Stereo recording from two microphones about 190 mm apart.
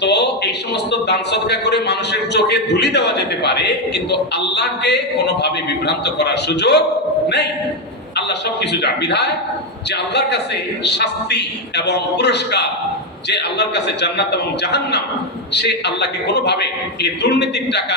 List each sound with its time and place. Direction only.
0.0 s a man's voice: 65° left (ahead or behind)
8.1 s a man's voice: 60° left (ahead or behind)